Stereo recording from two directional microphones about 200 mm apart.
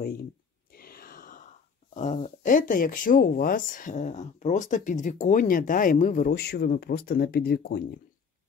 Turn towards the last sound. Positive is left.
turn(degrees=50)  # may be behind; listen again after turning